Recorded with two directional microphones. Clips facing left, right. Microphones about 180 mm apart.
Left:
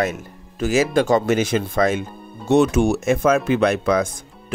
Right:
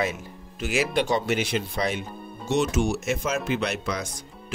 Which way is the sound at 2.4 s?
60° left (ahead or behind).